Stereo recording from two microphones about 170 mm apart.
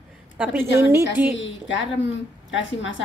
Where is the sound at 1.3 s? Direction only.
90° left.